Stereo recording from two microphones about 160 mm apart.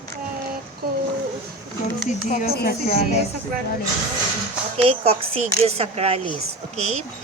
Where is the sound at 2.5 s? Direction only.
70° left (ahead or behind).